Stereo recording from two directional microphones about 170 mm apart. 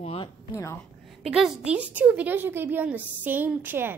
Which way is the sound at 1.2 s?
5° right (ahead or behind).